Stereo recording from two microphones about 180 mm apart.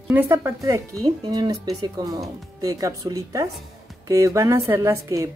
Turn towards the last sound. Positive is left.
turn(degrees=-15)  # may be behind; listen again after turning